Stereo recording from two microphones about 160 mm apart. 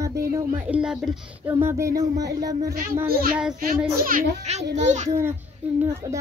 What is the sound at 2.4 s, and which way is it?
Speech, 25° right (ahead or behind).